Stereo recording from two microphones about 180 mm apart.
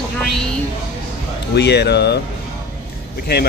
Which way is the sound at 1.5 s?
70° left (ahead or behind).